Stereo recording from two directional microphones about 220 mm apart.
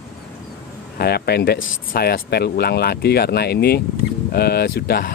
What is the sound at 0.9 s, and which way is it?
Speech, 45° left (ahead or behind).